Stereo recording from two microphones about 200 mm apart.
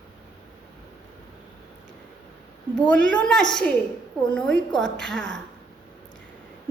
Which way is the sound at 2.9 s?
5° left (ahead or behind).